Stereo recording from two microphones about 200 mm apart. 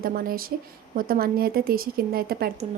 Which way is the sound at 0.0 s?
45° right (ahead or behind).